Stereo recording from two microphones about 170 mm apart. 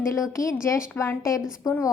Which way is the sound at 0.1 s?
15° left (ahead or behind).